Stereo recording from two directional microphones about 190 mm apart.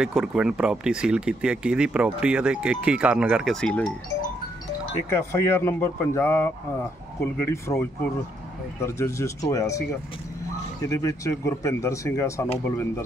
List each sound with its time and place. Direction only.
0.0 s speech: 5° right (ahead or behind)
5.1 s speech: 15° left (ahead or behind)
8.8 s speech: 15° left (ahead or behind)
10.9 s speech: 15° left (ahead or behind)